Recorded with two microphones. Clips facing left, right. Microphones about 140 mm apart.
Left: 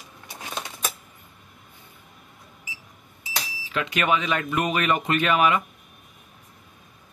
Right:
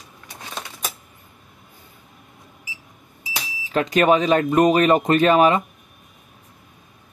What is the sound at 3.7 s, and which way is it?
Speech, 40° right (ahead or behind).